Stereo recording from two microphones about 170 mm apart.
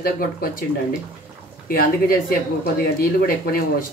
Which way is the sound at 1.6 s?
60° left (ahead or behind).